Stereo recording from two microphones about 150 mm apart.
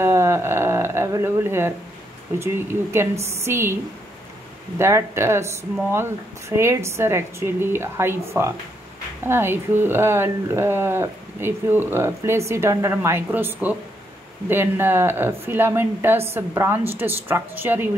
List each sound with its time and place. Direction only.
0.0 s a sound: 15° right (ahead or behind)
2.3 s speech: 15° right (ahead or behind)
4.7 s speech: 15° right (ahead or behind)